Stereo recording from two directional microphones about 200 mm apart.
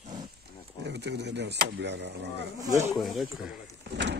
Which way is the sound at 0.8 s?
55° right (ahead or behind).